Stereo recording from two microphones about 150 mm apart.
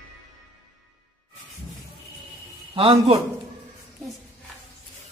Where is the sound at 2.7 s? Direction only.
40° right (ahead or behind).